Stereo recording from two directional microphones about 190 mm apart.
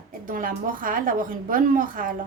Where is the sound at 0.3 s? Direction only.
45° right (ahead or behind).